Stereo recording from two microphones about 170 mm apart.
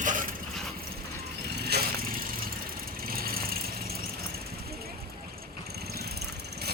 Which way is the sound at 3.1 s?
60° right (ahead or behind).